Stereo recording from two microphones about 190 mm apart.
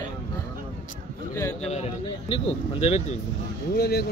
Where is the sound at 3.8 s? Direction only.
55° left (ahead or behind).